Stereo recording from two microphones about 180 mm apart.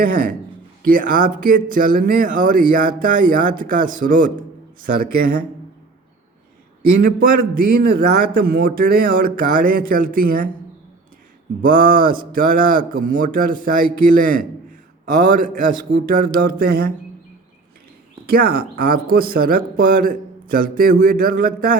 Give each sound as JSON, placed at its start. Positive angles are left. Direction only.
{"t": 0.0, "sound": "speech", "side_deg": -55}
{"t": 7.0, "sound": "speech", "side_deg": -55}
{"t": 11.6, "sound": "speech", "side_deg": -50}
{"t": 18.3, "sound": "speech", "side_deg": -55}